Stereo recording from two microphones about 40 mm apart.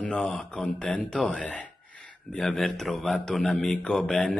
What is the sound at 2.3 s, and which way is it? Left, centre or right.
Speech, left.